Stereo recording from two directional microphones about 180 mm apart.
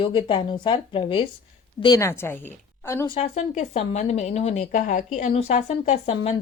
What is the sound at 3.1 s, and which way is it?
Speech, 35° left (ahead or behind).